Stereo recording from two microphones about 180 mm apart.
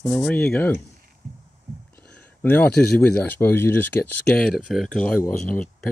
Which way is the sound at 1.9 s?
10° left (ahead or behind).